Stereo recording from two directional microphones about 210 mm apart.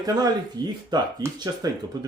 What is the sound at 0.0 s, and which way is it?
Speech, 20° right (ahead or behind).